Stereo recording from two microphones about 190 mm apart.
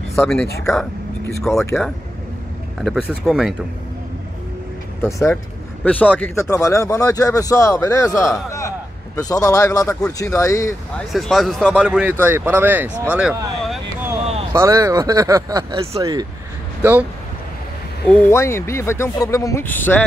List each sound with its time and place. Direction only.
0.1 s speech: 5° left (ahead or behind)
2.8 s speech: centre (ahead or behind)
5.0 s speech: 15° left (ahead or behind)
11.1 s speech: centre (ahead or behind)
13.0 s a sound: 5° right (ahead or behind)
14.5 s speech: 15° right (ahead or behind)
18.1 s speech: 15° left (ahead or behind)